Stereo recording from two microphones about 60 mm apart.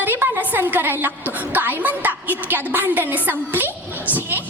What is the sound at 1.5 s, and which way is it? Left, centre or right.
A woman's voice, right.